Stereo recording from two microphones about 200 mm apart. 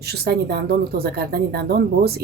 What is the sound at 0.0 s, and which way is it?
Speech, 55° right (ahead or behind).